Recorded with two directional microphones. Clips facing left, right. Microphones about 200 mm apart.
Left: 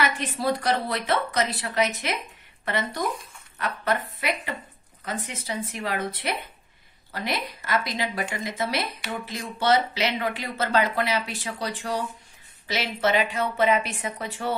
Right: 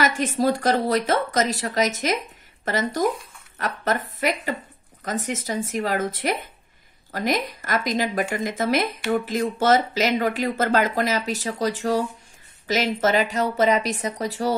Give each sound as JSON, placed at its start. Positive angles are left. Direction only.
{"t": 0.0, "sound": "speech", "side_deg": -40}
{"t": 5.0, "sound": "speech", "side_deg": -45}